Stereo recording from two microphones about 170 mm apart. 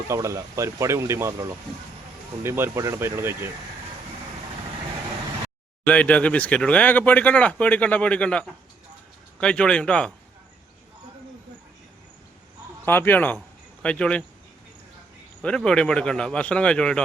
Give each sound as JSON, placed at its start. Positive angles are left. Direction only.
{"t": 0.1, "sound": "speech", "side_deg": -20}
{"t": 5.8, "sound": "a man's voice", "side_deg": 10}
{"t": 12.8, "sound": "speech", "side_deg": 15}
{"t": 15.4, "sound": "a man's voice", "side_deg": 5}